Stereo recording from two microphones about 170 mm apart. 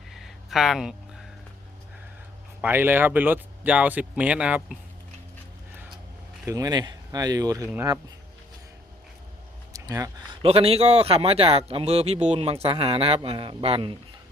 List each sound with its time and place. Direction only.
0.1 s a sound: centre (ahead or behind)
2.6 s speech: 10° right (ahead or behind)
6.4 s speech: 20° right (ahead or behind)
9.7 s speech: 20° right (ahead or behind)
10.4 s speech: 35° right (ahead or behind)